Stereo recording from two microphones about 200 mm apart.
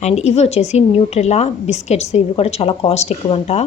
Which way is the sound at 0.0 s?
35° left (ahead or behind).